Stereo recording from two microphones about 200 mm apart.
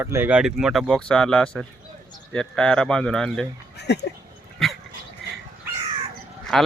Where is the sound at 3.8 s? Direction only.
60° left (ahead or behind).